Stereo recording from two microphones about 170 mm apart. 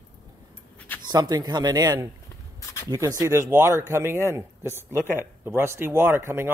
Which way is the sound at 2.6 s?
20° left (ahead or behind).